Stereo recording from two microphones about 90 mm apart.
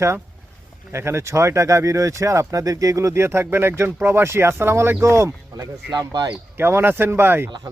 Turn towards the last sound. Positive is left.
turn(degrees=-25)  # may be behind; listen again after turning